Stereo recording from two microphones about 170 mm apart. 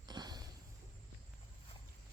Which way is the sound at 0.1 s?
25° right (ahead or behind).